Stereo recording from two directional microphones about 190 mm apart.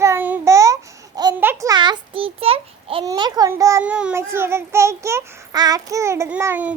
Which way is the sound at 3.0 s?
20° right (ahead or behind).